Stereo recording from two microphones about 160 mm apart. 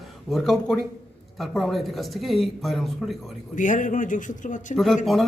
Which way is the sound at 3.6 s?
55° left (ahead or behind).